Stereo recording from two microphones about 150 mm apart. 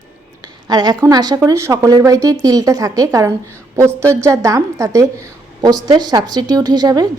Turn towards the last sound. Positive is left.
turn(degrees=-25)  # may be behind; listen again after turning